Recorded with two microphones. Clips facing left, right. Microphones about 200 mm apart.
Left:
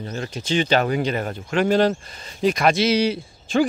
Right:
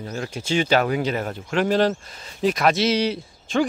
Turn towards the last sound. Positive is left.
turn(degrees=0)  # may be behind; listen again after turning